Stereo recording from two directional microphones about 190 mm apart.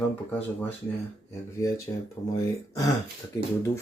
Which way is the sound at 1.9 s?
20° left (ahead or behind).